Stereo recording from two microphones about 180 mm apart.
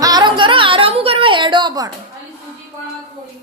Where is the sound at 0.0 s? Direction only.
25° right (ahead or behind).